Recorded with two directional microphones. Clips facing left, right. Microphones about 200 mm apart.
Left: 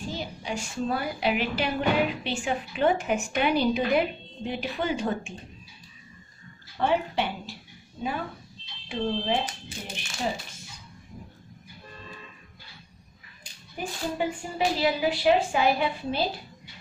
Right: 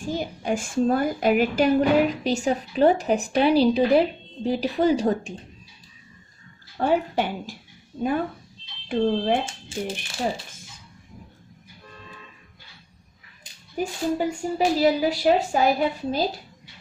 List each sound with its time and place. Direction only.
0.0 s a woman's voice: 50° right (ahead or behind)
6.8 s speech: 45° right (ahead or behind)
8.8 s speech: 55° right (ahead or behind)
9.5 s speech: 30° right (ahead or behind)
14.1 s a woman's voice: 40° right (ahead or behind)